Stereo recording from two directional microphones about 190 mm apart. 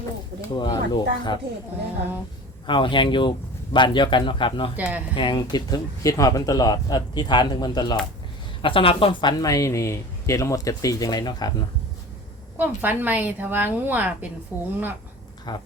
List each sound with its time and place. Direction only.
0.5 s speech: 20° left (ahead or behind)
2.6 s speech: 25° left (ahead or behind)
4.8 s a woman's voice: 10° right (ahead or behind)
5.1 s speech: 25° left (ahead or behind)
12.5 s a woman's voice: 10° right (ahead or behind)
15.5 s speech: 20° left (ahead or behind)